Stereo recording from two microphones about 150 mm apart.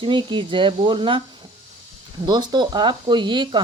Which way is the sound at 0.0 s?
30° right (ahead or behind).